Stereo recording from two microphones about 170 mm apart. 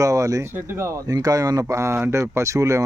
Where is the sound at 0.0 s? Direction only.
20° right (ahead or behind).